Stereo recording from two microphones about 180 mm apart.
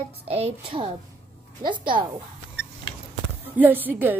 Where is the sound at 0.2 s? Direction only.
35° right (ahead or behind).